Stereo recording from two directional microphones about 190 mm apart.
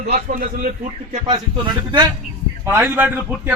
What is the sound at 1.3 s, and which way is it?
Speech, 25° right (ahead or behind).